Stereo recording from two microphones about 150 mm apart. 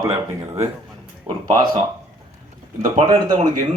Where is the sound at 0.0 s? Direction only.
20° right (ahead or behind).